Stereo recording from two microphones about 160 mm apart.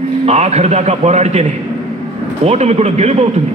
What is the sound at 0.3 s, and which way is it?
A man's voice, 45° right (ahead or behind).